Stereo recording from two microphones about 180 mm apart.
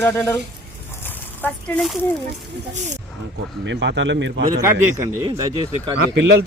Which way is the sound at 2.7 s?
40° right (ahead or behind).